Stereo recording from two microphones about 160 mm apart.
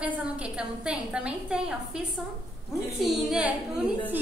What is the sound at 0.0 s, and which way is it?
A woman's voice, 10° right (ahead or behind).